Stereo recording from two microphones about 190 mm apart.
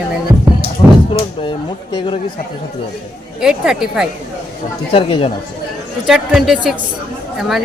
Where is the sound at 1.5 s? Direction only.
25° left (ahead or behind).